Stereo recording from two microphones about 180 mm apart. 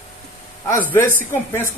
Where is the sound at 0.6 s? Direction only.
10° left (ahead or behind).